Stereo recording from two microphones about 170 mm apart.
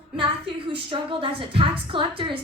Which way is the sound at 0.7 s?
30° right (ahead or behind).